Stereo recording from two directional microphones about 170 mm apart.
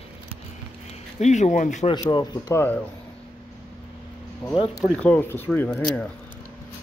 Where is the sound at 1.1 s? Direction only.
45° left (ahead or behind).